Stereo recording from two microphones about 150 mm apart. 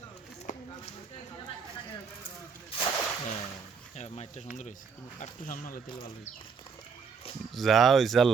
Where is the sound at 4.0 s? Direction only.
45° left (ahead or behind).